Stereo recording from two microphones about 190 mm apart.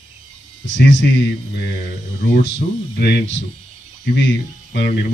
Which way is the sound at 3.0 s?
60° left (ahead or behind).